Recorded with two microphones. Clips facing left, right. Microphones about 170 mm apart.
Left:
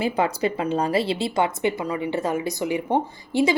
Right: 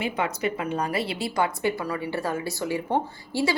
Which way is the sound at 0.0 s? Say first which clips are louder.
Left 4 dB; 30° left (ahead or behind).